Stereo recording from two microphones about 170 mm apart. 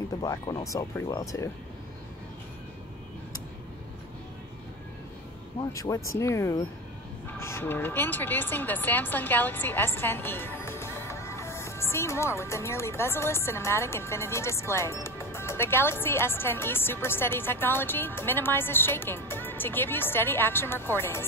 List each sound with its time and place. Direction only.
0.2 s speech: 20° left (ahead or behind)
5.7 s speech: 15° left (ahead or behind)